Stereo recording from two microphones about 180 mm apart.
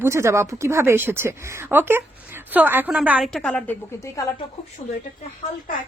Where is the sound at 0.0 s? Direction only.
15° right (ahead or behind); by 4.3 s 15° left (ahead or behind).